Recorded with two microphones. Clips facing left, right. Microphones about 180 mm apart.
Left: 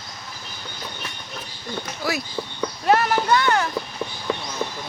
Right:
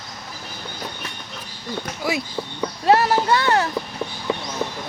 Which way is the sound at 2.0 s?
25° right (ahead or behind).